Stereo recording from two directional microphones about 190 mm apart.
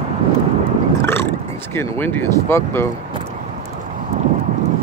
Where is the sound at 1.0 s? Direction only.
15° left (ahead or behind).